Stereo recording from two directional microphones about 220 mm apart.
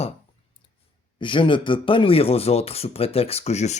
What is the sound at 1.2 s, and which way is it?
Speech, 20° left (ahead or behind).